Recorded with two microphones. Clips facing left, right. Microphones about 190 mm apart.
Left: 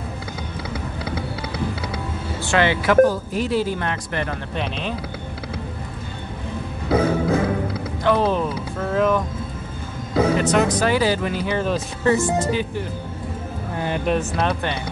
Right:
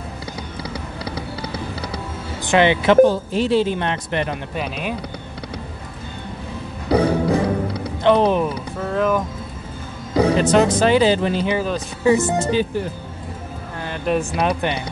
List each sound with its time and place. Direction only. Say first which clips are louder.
2.4 s speech: right 4 dB; 20° right (ahead or behind)
6.9 s music: right 2 dB; 5° left (ahead or behind)
8.0 s speech: right 4 dB; 20° right (ahead or behind)
8.7 s speech: left 1 dB; centre (ahead or behind)
10.3 s speech: right 3 dB; 30° right (ahead or behind)
14.0 s speech: right 4 dB; centre (ahead or behind)